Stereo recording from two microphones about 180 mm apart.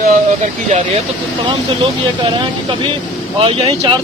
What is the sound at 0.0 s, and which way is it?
Speech, 45° right (ahead or behind).